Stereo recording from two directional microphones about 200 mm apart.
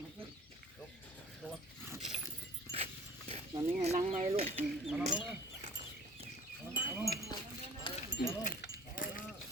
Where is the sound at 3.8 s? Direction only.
35° right (ahead or behind).